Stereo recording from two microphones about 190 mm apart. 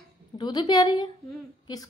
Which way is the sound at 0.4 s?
20° left (ahead or behind).